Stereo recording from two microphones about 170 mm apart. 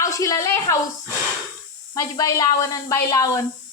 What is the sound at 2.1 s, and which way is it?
A woman's voice, 20° left (ahead or behind).